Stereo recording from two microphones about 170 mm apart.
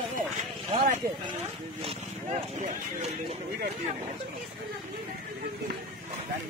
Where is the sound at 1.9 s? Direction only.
40° right (ahead or behind).